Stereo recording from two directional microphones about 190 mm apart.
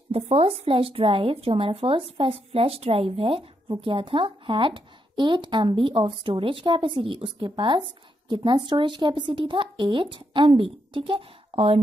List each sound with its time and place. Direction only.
0.1 s speech: 30° right (ahead or behind)